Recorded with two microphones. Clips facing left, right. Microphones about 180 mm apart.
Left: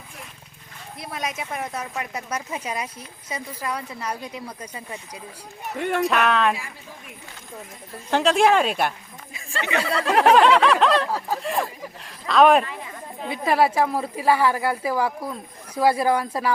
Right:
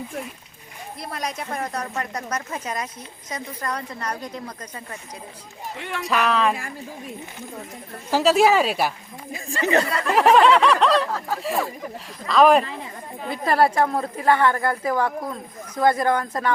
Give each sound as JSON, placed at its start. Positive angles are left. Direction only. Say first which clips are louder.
{"t": 1.0, "sound": "speech", "louder": "even", "side_deg": 0}
{"t": 5.6, "sound": "speech", "louder": "left 7 dB", "side_deg": 50}
{"t": 6.1, "sound": "a woman's voice", "louder": "right 3 dB", "side_deg": 0}
{"t": 8.1, "sound": "a woman's voice", "louder": "right 1 dB", "side_deg": -5}
{"t": 9.3, "sound": "speech", "louder": "right 5 dB", "side_deg": -40}
{"t": 10.1, "sound": "a woman's voice", "louder": "even", "side_deg": 0}